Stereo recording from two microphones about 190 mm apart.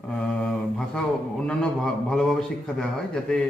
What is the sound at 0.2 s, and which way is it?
Mantra, 5° left (ahead or behind).